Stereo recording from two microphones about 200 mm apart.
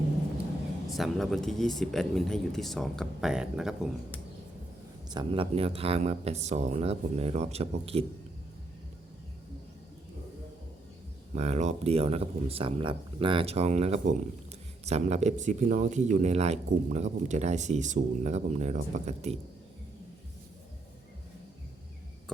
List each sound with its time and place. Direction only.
0.9 s speech: centre (ahead or behind)
5.1 s speech: 25° right (ahead or behind)
11.3 s speech: 35° right (ahead or behind)